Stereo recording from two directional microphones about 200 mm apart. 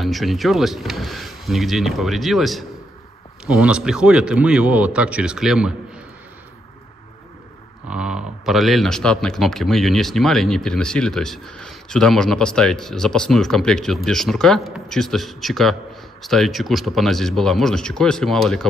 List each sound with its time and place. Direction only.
0.0 s speech: centre (ahead or behind)
7.9 s speech: 5° right (ahead or behind)